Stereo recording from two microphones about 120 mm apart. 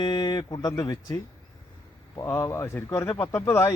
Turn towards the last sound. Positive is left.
turn(degrees=25)  # may be behind; listen again after turning